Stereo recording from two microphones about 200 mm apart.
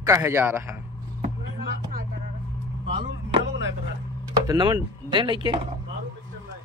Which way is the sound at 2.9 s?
35° right (ahead or behind).